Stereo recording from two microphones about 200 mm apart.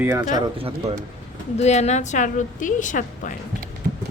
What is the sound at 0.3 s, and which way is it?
Speech, 25° right (ahead or behind).